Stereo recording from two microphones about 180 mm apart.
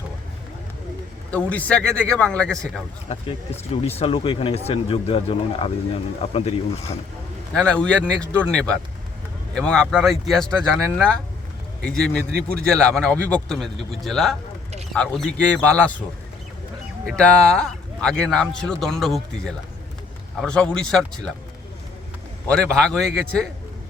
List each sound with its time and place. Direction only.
1.3 s speech: 10° left (ahead or behind)
3.1 s speech: 35° left (ahead or behind)
7.5 s speech: 5° left (ahead or behind)
17.1 s speech: 5° left (ahead or behind)
22.4 s speech: 5° left (ahead or behind)